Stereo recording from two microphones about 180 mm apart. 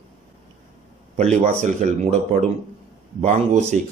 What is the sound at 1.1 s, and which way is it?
Speech, 40° right (ahead or behind).